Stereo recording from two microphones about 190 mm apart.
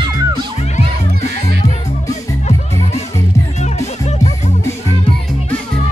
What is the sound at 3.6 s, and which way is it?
Music, 35° left (ahead or behind).